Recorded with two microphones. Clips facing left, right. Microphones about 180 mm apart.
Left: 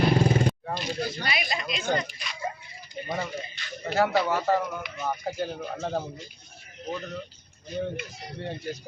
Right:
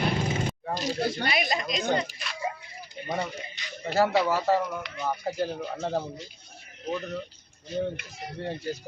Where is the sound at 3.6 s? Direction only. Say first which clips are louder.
Right 1 dB; 20° right (ahead or behind).